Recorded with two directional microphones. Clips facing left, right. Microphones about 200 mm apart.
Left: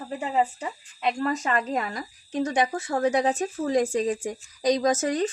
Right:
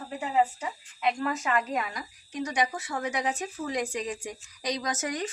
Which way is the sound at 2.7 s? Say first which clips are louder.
Left 7 dB; 50° left (ahead or behind).